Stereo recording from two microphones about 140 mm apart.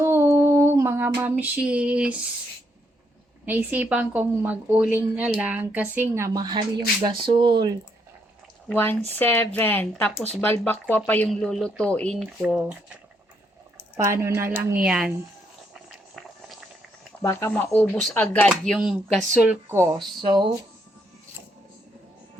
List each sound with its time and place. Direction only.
0.0 s a sound: 20° right (ahead or behind)
3.4 s a woman's voice: 10° right (ahead or behind); by 7.8 s 30° right (ahead or behind)
8.7 s speech: 15° left (ahead or behind); by 12.7 s 5° right (ahead or behind)
13.9 s a woman's voice: 20° right (ahead or behind)
15.7 s a sound: centre (ahead or behind)
17.7 s speech: 15° left (ahead or behind)
18.4 s speech: centre (ahead or behind)
19.5 s speech: 20° right (ahead or behind)
20.2 s speech: 35° right (ahead or behind)